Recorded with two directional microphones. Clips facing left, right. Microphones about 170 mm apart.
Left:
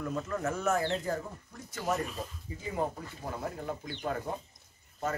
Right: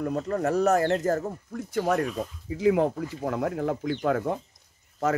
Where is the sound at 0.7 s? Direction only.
70° right (ahead or behind).